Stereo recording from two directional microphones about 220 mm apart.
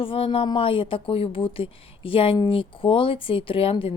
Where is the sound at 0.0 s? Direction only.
25° left (ahead or behind).